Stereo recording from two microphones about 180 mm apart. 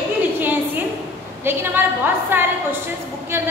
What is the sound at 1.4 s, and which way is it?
A woman's voice, 10° right (ahead or behind).